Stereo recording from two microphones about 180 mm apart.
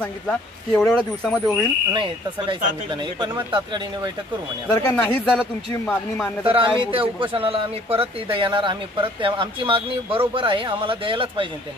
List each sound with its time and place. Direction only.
0.7 s speech: 5° left (ahead or behind)
1.9 s a man's voice: 25° right (ahead or behind)
4.6 s speech: 10° left (ahead or behind)
6.4 s a man's voice: 30° right (ahead or behind)